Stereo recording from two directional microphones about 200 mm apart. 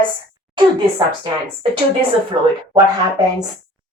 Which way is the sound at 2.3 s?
25° right (ahead or behind).